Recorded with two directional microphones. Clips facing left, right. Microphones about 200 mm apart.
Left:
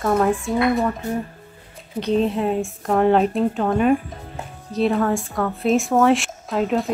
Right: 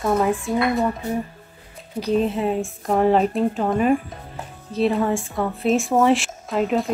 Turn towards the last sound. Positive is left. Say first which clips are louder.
# even
turn(degrees=0)  # may be behind; listen again after turning